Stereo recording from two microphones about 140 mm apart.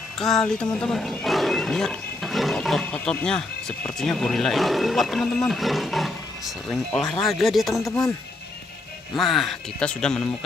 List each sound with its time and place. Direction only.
0.2 s speech: 5° left (ahead or behind)
7.8 s speech: 25° left (ahead or behind)
9.1 s speech: centre (ahead or behind)